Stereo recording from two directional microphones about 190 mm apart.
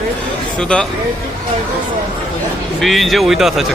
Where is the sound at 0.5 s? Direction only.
5° left (ahead or behind).